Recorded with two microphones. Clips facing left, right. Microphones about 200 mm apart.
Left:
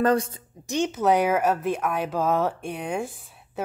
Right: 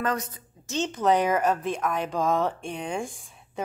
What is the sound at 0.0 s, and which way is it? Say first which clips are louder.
Speech: left 7 dB; 30° left (ahead or behind).